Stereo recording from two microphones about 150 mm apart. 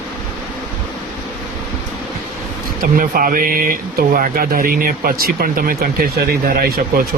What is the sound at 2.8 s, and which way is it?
Speech, 70° right (ahead or behind).